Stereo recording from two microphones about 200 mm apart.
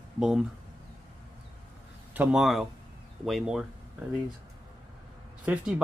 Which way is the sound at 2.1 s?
5° right (ahead or behind).